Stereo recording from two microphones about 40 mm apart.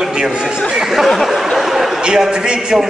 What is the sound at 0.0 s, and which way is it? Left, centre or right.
Speech, centre.